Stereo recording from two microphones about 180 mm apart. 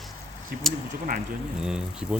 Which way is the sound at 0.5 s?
60° right (ahead or behind).